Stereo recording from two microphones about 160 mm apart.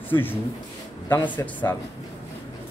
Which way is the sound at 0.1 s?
15° left (ahead or behind).